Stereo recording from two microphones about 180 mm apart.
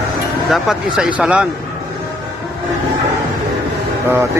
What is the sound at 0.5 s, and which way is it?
Speech, centre (ahead or behind).